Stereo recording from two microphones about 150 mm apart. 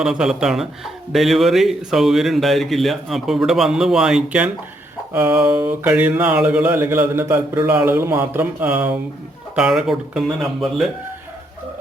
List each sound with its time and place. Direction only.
0.0 s speech: 5° right (ahead or behind)
5.1 s a sound: 10° right (ahead or behind)
9.6 s speech: 5° right (ahead or behind)